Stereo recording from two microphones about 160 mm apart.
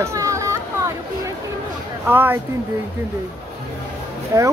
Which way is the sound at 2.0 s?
15° right (ahead or behind).